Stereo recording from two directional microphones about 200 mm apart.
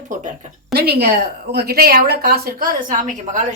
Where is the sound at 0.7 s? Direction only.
55° right (ahead or behind).